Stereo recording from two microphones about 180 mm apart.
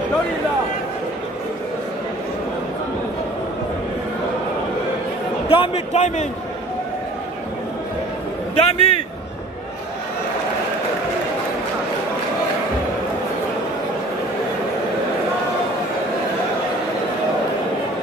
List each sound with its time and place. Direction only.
5.5 s a man's voice: 35° left (ahead or behind)
8.5 s a man's voice: 35° left (ahead or behind)